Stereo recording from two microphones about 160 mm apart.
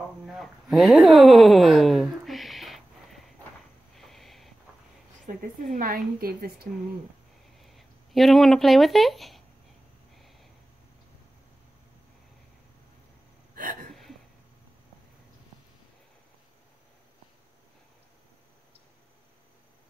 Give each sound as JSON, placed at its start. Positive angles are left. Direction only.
{"t": 0.3, "sound": "a sound", "side_deg": 0}
{"t": 5.3, "sound": "a woman's voice", "side_deg": -55}
{"t": 5.8, "sound": "a woman's voice", "side_deg": -65}
{"t": 7.5, "sound": "speech", "side_deg": 0}
{"t": 10.1, "sound": "a sound", "side_deg": 0}
{"t": 13.6, "sound": "hiccup", "side_deg": -60}